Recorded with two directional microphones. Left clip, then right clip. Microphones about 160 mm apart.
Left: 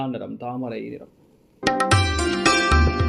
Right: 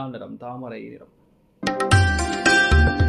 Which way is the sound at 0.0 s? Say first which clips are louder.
Left 4 dB; 25° left (ahead or behind).